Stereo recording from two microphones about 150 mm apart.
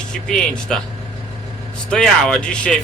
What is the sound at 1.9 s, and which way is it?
Speech, 5° left (ahead or behind).